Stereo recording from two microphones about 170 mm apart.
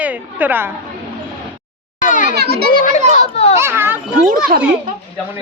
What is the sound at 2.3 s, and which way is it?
Speech, 70° right (ahead or behind).